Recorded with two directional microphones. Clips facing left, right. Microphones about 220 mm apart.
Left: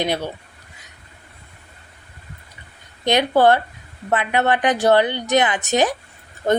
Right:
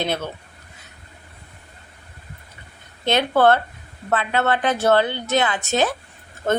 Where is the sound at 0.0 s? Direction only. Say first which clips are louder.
Left 2 dB; 15° left (ahead or behind).